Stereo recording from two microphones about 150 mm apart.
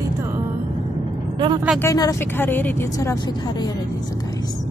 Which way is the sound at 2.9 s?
25° left (ahead or behind).